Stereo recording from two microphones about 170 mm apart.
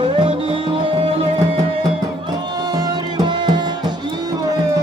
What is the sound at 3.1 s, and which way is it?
Music, 25° right (ahead or behind).